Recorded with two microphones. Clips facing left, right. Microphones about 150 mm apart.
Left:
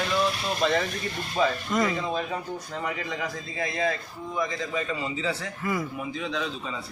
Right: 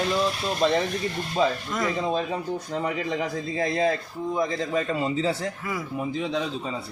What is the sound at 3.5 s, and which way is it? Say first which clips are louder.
A man's voice: right 4 dB; 35° right (ahead or behind).